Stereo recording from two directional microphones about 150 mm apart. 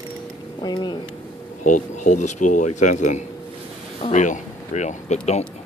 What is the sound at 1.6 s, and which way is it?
A man's voice, 55° left (ahead or behind).